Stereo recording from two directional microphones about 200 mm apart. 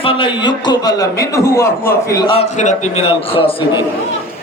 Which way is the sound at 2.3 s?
30° left (ahead or behind).